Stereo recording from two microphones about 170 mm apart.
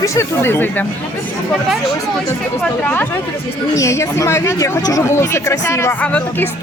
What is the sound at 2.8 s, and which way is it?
Speech, 10° left (ahead or behind).